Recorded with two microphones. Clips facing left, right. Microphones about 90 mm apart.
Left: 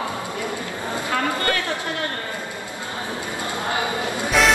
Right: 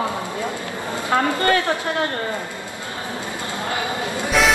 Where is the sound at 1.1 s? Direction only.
30° right (ahead or behind).